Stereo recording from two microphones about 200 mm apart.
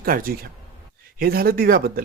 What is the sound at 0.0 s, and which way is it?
Speech, 45° right (ahead or behind).